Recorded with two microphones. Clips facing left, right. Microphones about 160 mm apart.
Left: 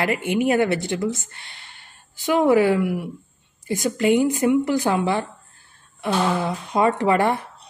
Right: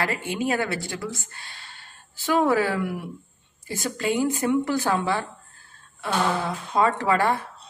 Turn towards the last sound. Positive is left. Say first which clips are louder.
# left 3 dB
turn(degrees=20)  # may be behind; listen again after turning